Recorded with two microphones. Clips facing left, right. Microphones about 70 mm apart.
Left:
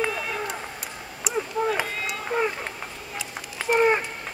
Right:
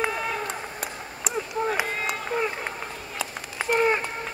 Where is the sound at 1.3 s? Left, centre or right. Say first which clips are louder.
Left 2 dB; right.